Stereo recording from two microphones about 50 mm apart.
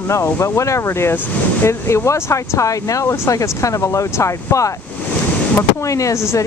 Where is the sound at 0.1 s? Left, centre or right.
Left.